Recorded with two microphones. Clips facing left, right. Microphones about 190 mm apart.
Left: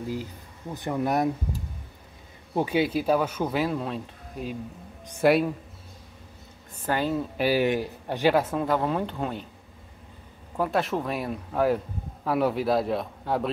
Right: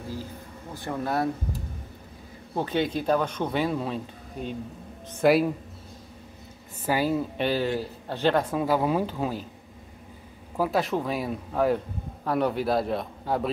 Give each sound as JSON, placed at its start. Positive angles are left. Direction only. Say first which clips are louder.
{"t": 0.7, "sound": "speech", "louder": "left 2 dB", "side_deg": 20}
{"t": 2.5, "sound": "speech", "louder": "left 2 dB", "side_deg": 10}
{"t": 6.9, "sound": "speech", "louder": "right 1 dB", "side_deg": -5}
{"t": 7.3, "sound": "speech", "louder": "left 3 dB", "side_deg": 10}
{"t": 10.6, "sound": "speech", "louder": "right 1 dB", "side_deg": 0}